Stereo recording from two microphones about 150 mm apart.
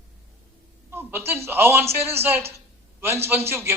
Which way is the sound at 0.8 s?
15° right (ahead or behind).